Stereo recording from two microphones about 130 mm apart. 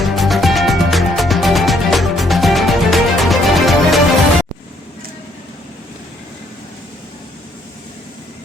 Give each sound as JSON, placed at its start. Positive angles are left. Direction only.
{"t": 0.0, "sound": "music", "side_deg": 0}